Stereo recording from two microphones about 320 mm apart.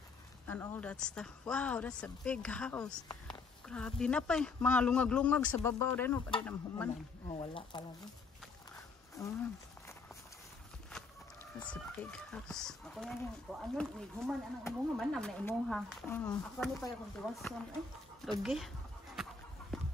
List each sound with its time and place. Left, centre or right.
0.5 s speech: centre
7.2 s speech: centre
9.1 s a sound: centre
11.6 s speech: centre